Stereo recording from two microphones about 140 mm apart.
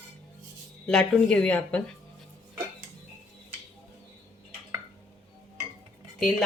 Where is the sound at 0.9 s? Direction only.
5° left (ahead or behind).